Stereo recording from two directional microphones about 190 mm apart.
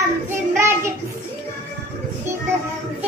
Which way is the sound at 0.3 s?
15° right (ahead or behind).